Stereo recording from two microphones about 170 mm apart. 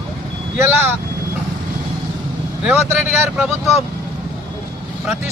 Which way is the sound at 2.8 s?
15° right (ahead or behind).